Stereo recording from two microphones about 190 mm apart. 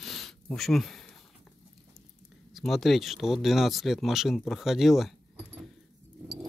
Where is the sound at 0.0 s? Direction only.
Centre (ahead or behind).